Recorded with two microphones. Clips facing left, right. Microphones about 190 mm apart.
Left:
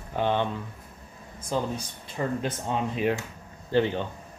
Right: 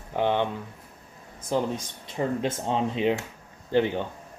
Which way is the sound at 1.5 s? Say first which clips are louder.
Right 2 dB; 20° right (ahead or behind).